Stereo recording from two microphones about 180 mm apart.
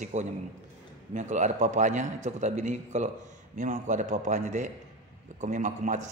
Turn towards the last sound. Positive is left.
turn(degrees=-40)  # may be behind; listen again after turning